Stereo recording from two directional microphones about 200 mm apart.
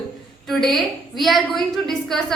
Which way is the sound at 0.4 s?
Centre (ahead or behind).